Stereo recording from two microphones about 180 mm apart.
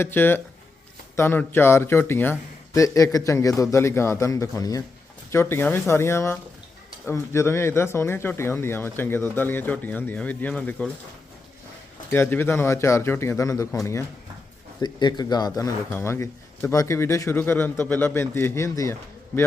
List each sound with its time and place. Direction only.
0.0 s speech: 10° left (ahead or behind)
12.1 s speech: 10° left (ahead or behind)
14.8 s speech: 25° left (ahead or behind)